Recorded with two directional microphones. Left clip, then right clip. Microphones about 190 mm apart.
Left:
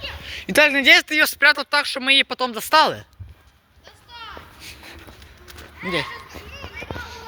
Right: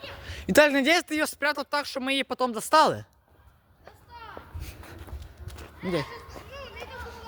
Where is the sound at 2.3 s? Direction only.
25° right (ahead or behind).